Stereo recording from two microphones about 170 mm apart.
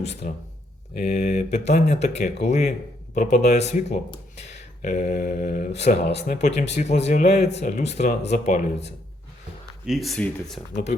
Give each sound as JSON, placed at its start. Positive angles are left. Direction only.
{"t": 0.2, "sound": "speech", "side_deg": 50}
{"t": 4.4, "sound": "a sound", "side_deg": 45}
{"t": 5.9, "sound": "speech", "side_deg": 50}
{"t": 9.8, "sound": "speech", "side_deg": 0}